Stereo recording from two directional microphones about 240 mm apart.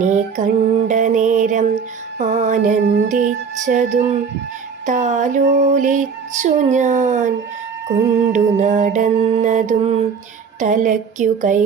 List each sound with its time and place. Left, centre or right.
0.0 s music: right
4.9 s female singing: right
8.3 s mantra: right
10.6 s female singing: right